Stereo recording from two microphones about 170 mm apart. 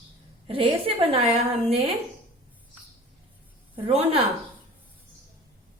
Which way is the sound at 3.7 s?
35° right (ahead or behind).